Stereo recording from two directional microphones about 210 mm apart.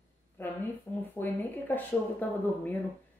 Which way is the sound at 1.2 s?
10° left (ahead or behind).